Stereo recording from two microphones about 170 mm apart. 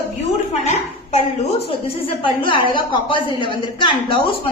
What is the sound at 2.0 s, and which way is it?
A woman's voice, 30° left (ahead or behind).